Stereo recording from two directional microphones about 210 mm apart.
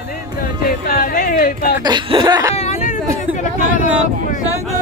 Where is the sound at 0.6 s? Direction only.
45° left (ahead or behind).